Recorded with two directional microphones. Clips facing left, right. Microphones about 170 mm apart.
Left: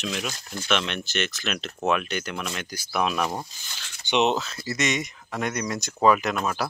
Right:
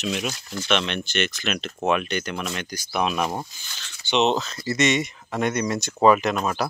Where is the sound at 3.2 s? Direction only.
10° right (ahead or behind).